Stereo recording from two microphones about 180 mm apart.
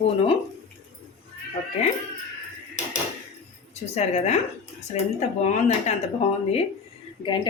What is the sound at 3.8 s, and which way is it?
Speech, 35° left (ahead or behind).